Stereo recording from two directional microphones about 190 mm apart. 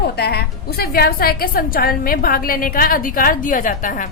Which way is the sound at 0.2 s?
55° left (ahead or behind).